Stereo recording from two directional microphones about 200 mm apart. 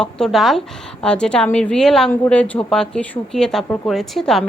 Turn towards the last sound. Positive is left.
turn(degrees=0)  # may be behind; listen again after turning